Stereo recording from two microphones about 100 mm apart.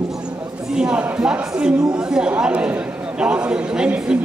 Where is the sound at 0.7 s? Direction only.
10° right (ahead or behind).